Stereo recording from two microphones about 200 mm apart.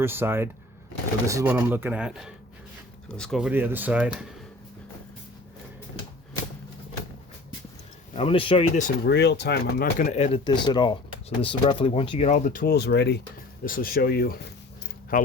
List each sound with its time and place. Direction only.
0.0 s a man's voice: 10° right (ahead or behind)
8.1 s speech: 30° left (ahead or behind)
8.8 s speech: 55° left (ahead or behind)
13.7 s speech: 45° left (ahead or behind)